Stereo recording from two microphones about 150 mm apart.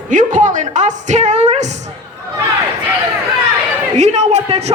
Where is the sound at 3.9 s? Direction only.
50° right (ahead or behind).